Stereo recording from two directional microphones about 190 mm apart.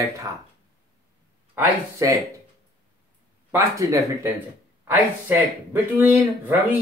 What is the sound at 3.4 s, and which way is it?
Speech, 15° right (ahead or behind).